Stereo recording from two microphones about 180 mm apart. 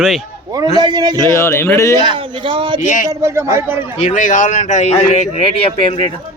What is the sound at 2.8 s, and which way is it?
Speech, 45° left (ahead or behind).